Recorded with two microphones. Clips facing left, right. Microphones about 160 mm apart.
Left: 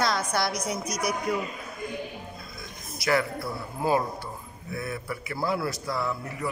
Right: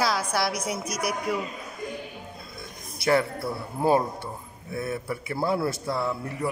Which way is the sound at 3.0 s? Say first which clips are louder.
Right 3 dB; 25° right (ahead or behind).